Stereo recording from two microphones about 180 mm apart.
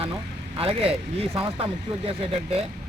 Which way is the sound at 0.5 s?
30° right (ahead or behind).